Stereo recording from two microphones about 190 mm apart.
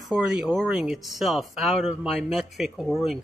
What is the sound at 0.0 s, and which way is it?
Speech, centre (ahead or behind).